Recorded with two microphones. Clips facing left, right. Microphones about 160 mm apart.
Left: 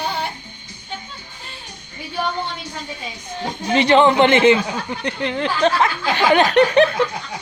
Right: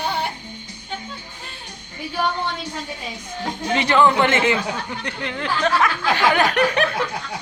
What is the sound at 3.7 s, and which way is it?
A man's voice, 25° left (ahead or behind).